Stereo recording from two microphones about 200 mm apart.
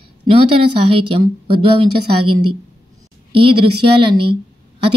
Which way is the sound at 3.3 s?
25° right (ahead or behind).